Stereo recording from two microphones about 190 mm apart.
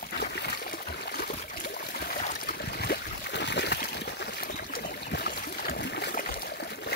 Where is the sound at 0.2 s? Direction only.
60° left (ahead or behind).